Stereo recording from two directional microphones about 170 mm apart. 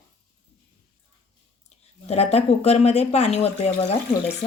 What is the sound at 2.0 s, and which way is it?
Speech, 40° left (ahead or behind).